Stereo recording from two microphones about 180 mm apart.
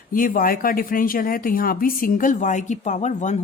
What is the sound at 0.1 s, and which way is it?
Speech, 50° left (ahead or behind).